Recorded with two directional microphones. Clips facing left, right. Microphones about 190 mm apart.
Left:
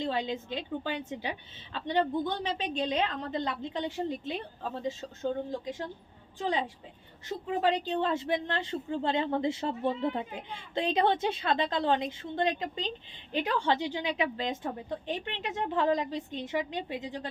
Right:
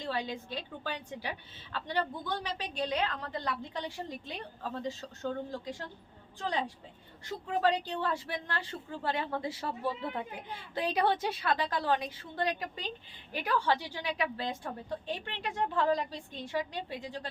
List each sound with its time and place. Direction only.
0.0 s a woman's voice: 20° left (ahead or behind)